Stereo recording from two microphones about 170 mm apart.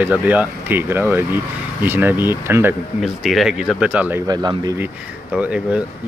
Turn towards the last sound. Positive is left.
turn(degrees=-5)  # may be behind; listen again after turning